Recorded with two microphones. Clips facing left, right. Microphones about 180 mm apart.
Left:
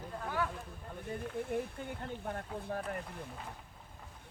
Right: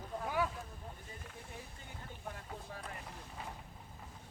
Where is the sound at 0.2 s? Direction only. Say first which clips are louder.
Right 1 dB; 10° right (ahead or behind).